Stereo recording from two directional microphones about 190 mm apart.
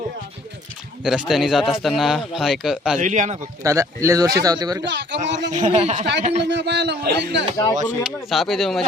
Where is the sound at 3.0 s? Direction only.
40° right (ahead or behind).